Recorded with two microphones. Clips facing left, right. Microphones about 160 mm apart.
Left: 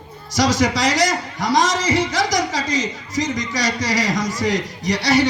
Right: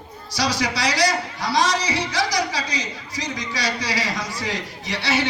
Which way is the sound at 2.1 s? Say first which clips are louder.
Left 3 dB; 45° left (ahead or behind).